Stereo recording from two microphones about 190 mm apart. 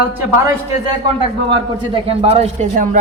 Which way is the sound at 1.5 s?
30° right (ahead or behind).